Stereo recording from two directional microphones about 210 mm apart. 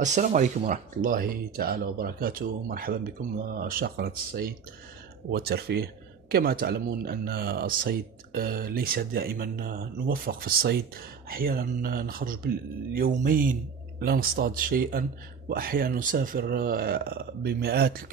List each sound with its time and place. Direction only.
0.0 s speech: 35° right (ahead or behind)